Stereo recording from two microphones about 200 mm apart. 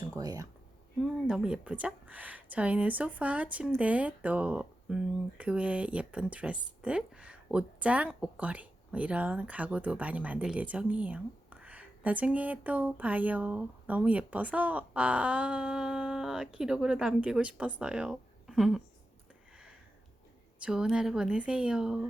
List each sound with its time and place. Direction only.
0.2 s a woman's voice: 20° right (ahead or behind)
1.0 s a woman's voice: 5° right (ahead or behind)
20.6 s a woman's voice: 5° right (ahead or behind)